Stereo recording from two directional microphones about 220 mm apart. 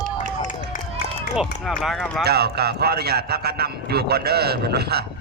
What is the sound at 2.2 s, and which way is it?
A man's voice, 45° right (ahead or behind).